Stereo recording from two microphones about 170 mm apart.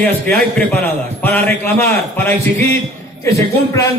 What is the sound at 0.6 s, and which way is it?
A man's voice, 10° left (ahead or behind).